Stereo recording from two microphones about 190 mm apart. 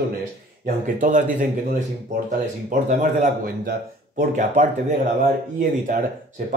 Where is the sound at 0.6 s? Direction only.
45° right (ahead or behind).